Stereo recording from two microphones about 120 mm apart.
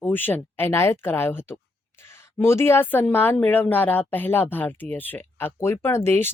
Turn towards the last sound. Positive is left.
turn(degrees=20)  # may be behind; listen again after turning